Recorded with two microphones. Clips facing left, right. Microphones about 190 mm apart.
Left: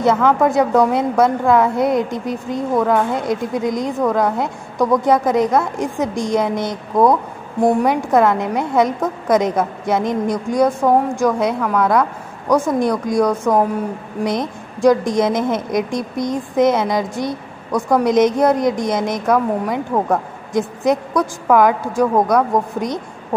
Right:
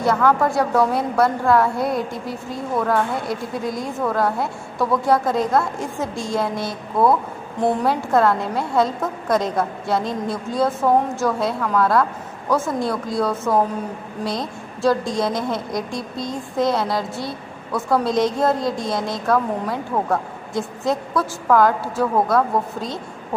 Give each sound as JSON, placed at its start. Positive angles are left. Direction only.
{"t": 0.0, "sound": "a woman's voice", "side_deg": 20}